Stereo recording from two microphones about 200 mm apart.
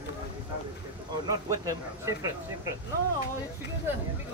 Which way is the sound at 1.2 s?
15° right (ahead or behind).